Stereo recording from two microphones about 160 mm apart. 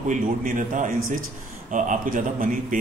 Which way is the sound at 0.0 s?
55° right (ahead or behind).